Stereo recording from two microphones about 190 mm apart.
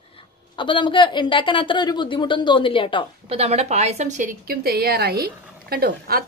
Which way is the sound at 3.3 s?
35° right (ahead or behind).